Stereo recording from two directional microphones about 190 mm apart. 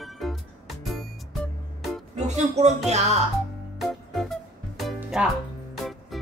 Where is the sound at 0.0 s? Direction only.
Centre (ahead or behind).